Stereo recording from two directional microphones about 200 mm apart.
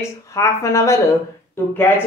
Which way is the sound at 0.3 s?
15° left (ahead or behind).